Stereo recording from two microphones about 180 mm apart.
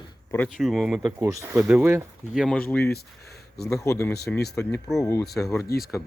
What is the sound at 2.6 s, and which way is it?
Speech, 15° left (ahead or behind).